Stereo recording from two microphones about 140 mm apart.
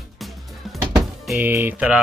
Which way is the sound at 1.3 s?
15° right (ahead or behind).